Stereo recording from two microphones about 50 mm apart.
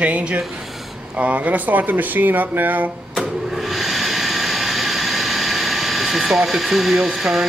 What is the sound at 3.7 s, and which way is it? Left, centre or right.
Vehicle, centre.